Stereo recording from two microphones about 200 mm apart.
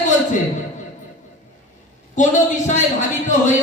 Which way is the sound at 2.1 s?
40° left (ahead or behind).